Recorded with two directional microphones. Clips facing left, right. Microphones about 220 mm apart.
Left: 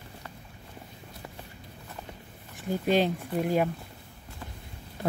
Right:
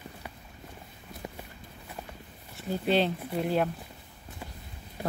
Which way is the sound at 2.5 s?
10° left (ahead or behind).